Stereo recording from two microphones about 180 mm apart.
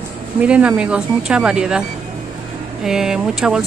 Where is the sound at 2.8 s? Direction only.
5° right (ahead or behind).